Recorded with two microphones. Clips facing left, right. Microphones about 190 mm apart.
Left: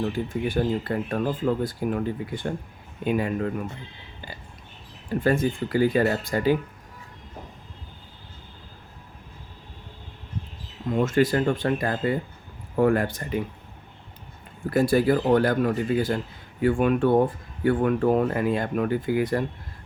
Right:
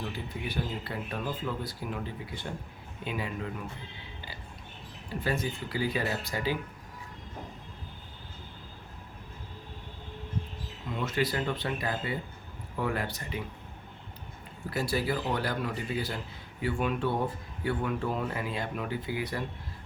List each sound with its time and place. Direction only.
0.0 s speech: 50° left (ahead or behind)
5.2 s speech: 50° left (ahead or behind)
10.8 s speech: 45° left (ahead or behind)
14.7 s speech: 50° left (ahead or behind)